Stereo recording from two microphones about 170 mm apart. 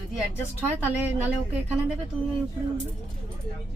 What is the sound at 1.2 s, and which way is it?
Speech, 10° right (ahead or behind).